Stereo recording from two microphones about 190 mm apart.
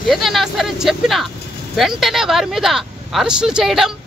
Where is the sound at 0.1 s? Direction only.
Centre (ahead or behind).